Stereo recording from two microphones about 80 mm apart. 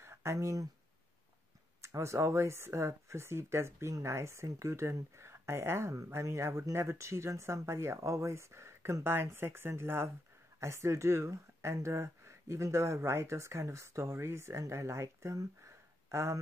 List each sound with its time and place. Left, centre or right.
0.0 s speech: right
1.8 s speech: right